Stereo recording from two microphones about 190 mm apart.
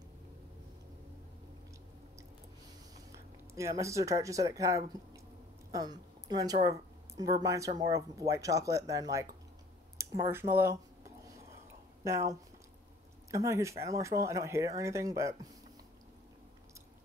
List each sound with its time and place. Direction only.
3.5 s a woman's voice: 15° right (ahead or behind)
12.0 s speech: 15° right (ahead or behind)